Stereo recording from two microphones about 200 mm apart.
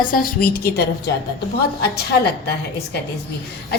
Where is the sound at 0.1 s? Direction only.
45° left (ahead or behind).